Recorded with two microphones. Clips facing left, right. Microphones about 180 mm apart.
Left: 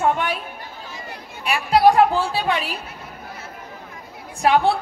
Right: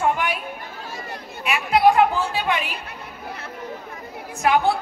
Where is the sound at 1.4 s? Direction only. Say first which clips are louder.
Left 2 dB; 35° left (ahead or behind).